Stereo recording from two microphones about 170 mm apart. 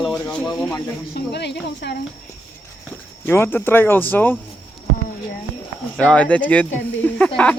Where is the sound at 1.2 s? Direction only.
80° left.